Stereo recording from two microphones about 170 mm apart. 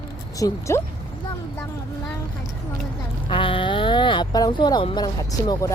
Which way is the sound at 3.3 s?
30° left (ahead or behind).